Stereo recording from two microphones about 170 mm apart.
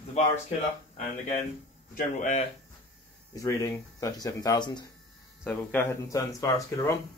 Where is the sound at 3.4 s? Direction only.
20° left (ahead or behind).